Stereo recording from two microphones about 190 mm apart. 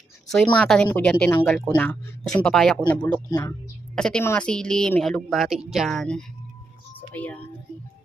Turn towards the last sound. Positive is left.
turn(degrees=10)  # may be behind; listen again after turning